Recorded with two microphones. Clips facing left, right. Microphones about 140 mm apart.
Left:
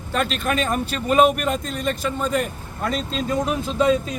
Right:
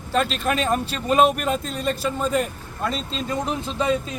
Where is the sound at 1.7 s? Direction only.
35° right (ahead or behind).